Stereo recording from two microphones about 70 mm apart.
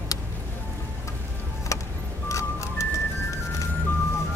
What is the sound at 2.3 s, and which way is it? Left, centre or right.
Music, left.